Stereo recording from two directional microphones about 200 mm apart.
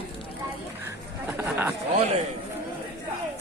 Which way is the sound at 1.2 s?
10° right (ahead or behind).